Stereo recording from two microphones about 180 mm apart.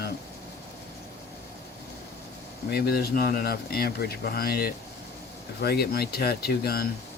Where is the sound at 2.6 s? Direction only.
60° left (ahead or behind).